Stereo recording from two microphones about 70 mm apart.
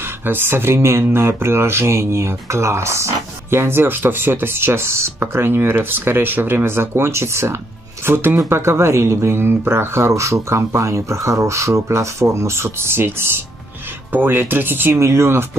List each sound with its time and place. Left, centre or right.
0.2 s speech: right